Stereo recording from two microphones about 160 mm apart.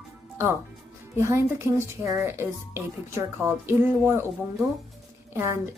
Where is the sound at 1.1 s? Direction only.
15° right (ahead or behind).